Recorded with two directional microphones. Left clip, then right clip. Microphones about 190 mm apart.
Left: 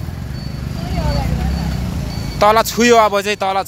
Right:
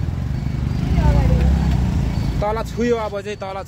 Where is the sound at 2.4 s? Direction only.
55° left (ahead or behind); by 3.7 s 35° left (ahead or behind).